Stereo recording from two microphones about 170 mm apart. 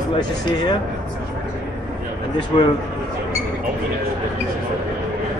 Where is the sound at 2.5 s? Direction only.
30° left (ahead or behind).